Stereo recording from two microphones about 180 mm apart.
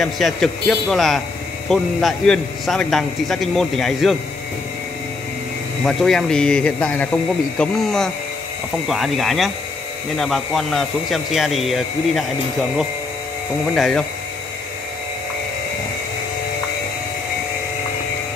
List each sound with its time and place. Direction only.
0.0 s a man's voice: centre (ahead or behind)
5.9 s a man's voice: 5° left (ahead or behind)
13.7 s a man's voice: centre (ahead or behind)